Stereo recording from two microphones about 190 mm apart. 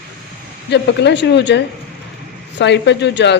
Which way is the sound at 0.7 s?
65° left (ahead or behind).